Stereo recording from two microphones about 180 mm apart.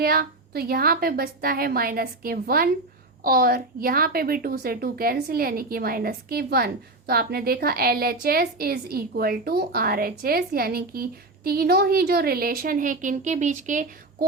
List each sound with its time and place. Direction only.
0.0 s a woman's voice: 55° right (ahead or behind)